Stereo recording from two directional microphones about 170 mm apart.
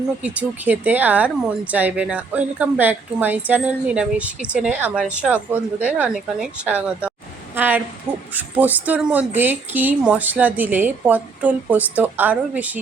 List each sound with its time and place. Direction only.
0.2 s a woman's voice: 10° right (ahead or behind)